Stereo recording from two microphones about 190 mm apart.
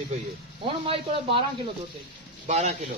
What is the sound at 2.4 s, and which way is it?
Speech, 35° right (ahead or behind).